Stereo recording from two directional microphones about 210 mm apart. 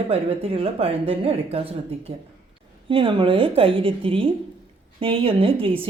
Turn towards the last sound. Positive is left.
turn(degrees=-25)  # may be behind; listen again after turning